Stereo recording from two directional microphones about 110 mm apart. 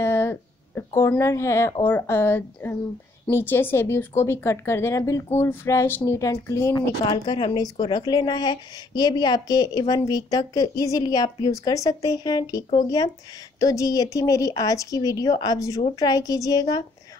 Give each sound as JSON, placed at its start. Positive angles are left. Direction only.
{"t": 0.0, "sound": "speech", "side_deg": 20}
{"t": 7.1, "sound": "a woman's voice", "side_deg": 45}